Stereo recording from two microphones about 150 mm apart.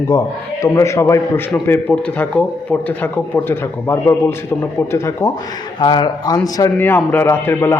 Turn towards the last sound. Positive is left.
turn(degrees=15)  # may be behind; listen again after turning